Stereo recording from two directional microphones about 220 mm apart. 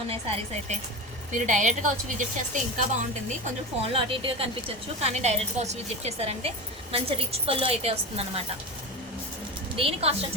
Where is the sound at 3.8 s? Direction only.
25° right (ahead or behind).